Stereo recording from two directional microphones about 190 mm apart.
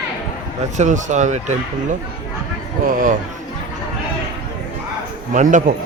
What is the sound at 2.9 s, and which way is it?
Speech, 45° right (ahead or behind).